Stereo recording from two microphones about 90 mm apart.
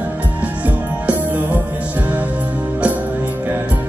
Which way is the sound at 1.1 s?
20° right (ahead or behind).